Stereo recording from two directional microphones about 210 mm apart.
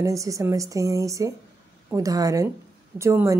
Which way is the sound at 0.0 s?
15° right (ahead or behind).